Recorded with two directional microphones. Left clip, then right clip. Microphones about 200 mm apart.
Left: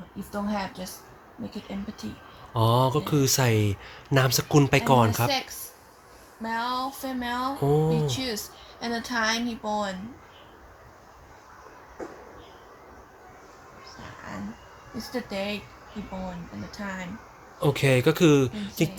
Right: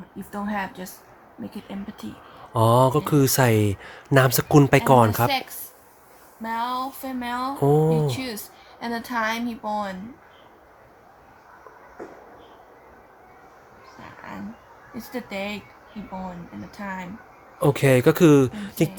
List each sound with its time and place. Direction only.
2.5 s speech: 30° right (ahead or behind)
6.4 s speech: centre (ahead or behind)
7.6 s speech: 30° right (ahead or behind)
8.0 s speech: centre (ahead or behind)
15.1 s speech: centre (ahead or behind)
16.7 s speech: centre (ahead or behind)
17.6 s speech: 30° right (ahead or behind)